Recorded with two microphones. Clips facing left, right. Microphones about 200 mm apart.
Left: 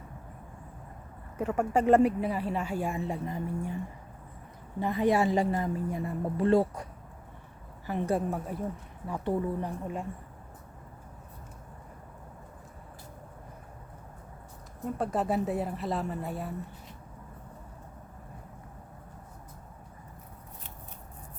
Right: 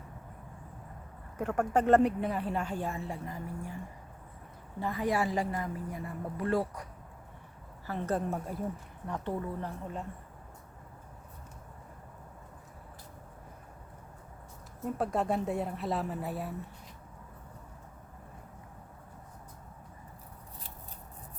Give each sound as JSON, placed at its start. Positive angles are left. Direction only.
{"t": 1.4, "sound": "speech", "side_deg": 5}
{"t": 4.8, "sound": "a woman's voice", "side_deg": 20}
{"t": 7.9, "sound": "speech", "side_deg": 15}
{"t": 8.5, "sound": "a woman's voice", "side_deg": 0}
{"t": 9.0, "sound": "speech", "side_deg": 10}
{"t": 14.9, "sound": "a woman's voice", "side_deg": 0}